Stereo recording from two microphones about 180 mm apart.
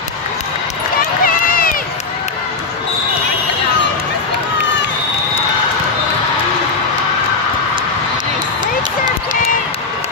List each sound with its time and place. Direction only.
1.2 s run: 55° left (ahead or behind)